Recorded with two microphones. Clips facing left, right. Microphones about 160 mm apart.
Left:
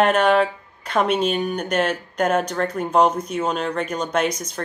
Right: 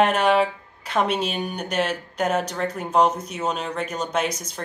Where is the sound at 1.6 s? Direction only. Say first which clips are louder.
Right 1 dB; 50° left (ahead or behind).